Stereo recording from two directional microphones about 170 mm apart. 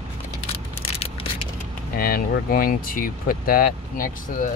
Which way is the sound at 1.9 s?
60° left (ahead or behind).